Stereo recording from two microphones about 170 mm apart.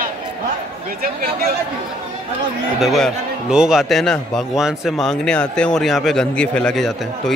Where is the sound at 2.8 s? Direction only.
Centre (ahead or behind).